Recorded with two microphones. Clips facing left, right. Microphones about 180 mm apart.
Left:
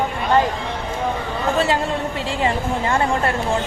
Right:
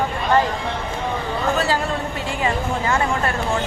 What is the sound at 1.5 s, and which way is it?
A woman's voice, 25° left (ahead or behind).